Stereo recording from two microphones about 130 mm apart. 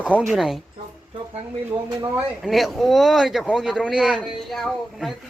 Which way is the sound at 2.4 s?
Centre (ahead or behind).